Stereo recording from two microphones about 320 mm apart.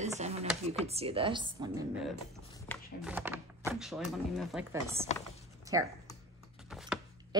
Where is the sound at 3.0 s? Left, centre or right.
Centre.